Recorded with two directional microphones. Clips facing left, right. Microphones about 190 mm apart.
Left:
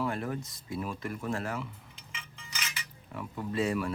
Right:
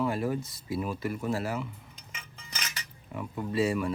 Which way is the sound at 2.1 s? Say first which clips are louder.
Right 1 dB; 40° right (ahead or behind).